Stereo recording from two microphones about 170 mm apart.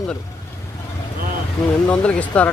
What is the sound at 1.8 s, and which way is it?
Speech, 5° left (ahead or behind).